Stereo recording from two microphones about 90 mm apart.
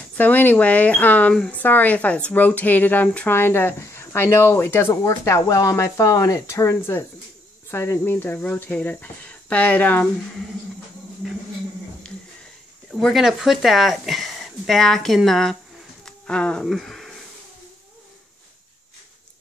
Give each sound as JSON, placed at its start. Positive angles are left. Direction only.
{"t": 0.2, "sound": "speech", "side_deg": 20}
{"t": 1.6, "sound": "speech", "side_deg": 20}
{"t": 13.0, "sound": "speech", "side_deg": 0}